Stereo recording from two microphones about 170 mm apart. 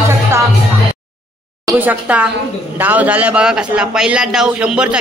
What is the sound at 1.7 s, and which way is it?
A man's voice, 10° right (ahead or behind).